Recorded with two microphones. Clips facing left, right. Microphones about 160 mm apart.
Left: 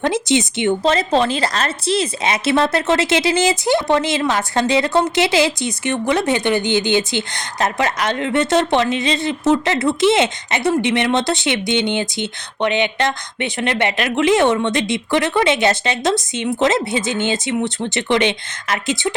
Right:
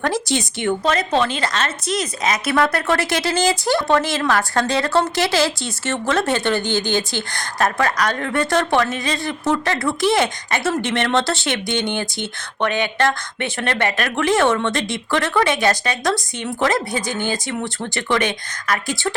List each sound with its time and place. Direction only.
0.0 s speech: 20° left (ahead or behind)